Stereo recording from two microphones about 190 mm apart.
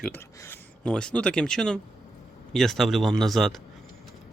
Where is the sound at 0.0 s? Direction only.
10° left (ahead or behind).